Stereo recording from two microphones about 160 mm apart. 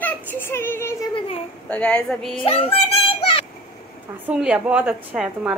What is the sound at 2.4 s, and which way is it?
Child singing, 35° left (ahead or behind).